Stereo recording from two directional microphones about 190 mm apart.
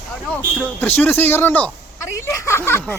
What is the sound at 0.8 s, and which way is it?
Speech, 10° left (ahead or behind).